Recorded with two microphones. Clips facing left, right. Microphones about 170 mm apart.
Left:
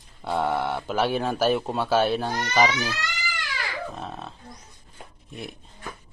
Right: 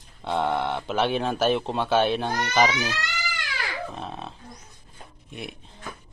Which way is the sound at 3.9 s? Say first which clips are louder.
Right 1 dB; centre (ahead or behind).